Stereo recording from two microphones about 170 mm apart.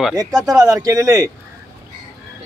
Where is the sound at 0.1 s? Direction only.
20° right (ahead or behind).